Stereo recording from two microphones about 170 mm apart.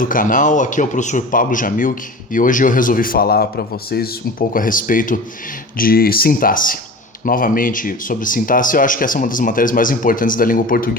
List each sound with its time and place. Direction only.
0.0 s speech: 55° left (ahead or behind)